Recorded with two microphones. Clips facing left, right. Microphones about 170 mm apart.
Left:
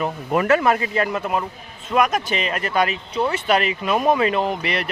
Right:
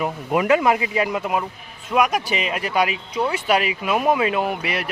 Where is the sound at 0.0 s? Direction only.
10° right (ahead or behind).